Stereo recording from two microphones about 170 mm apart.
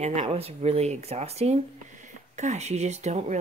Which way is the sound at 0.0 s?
40° right (ahead or behind).